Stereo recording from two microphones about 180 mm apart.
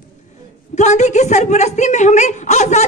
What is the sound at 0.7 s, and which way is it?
A man's voice, 40° left (ahead or behind).